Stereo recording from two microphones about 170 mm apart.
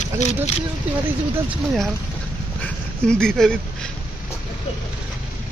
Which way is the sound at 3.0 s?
5° left (ahead or behind).